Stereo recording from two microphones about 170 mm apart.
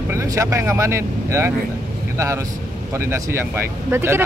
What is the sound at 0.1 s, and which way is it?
Speech, 15° right (ahead or behind).